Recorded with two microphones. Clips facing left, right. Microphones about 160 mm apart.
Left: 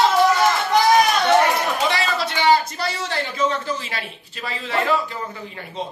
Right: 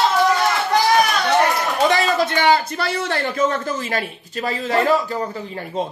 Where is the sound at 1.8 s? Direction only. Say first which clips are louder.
Right 5 dB; 45° right (ahead or behind).